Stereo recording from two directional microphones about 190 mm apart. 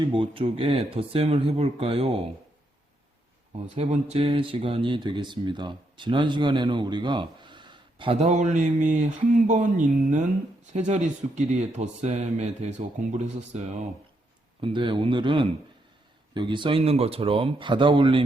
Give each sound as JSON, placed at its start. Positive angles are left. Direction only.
{"t": 0.0, "sound": "speech", "side_deg": -25}
{"t": 3.8, "sound": "speech", "side_deg": -30}
{"t": 14.6, "sound": "speech", "side_deg": -25}